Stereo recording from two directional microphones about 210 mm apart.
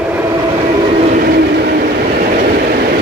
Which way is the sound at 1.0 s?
40° right (ahead or behind).